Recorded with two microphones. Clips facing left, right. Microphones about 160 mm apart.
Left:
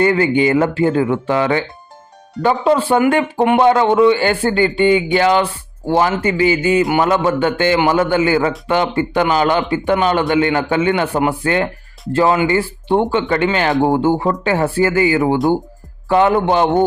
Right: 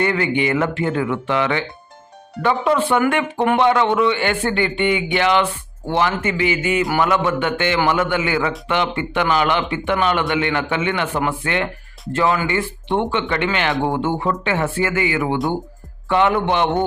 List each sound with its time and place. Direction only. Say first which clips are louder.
0.0 s a man's voice: left 5 dB; 35° left (ahead or behind)